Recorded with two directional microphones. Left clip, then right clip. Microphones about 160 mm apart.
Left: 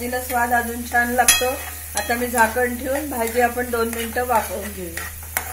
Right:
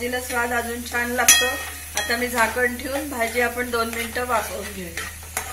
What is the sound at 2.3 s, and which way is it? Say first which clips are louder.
Speech: left 4 dB; 50° left (ahead or behind).